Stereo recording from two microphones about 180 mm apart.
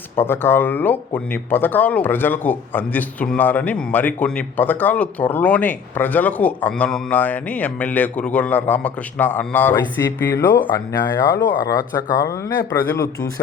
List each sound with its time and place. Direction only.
0.2 s speech: 10° left (ahead or behind)
12.7 s speech: 15° left (ahead or behind)